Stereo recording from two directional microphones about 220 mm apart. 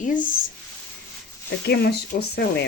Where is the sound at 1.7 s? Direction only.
50° left (ahead or behind).